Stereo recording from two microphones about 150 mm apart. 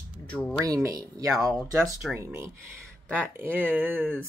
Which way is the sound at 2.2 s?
15° right (ahead or behind).